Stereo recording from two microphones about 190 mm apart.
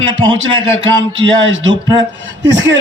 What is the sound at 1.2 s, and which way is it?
Speech, 80° right.